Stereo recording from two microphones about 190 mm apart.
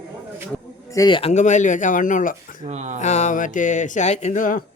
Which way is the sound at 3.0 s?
40° left (ahead or behind).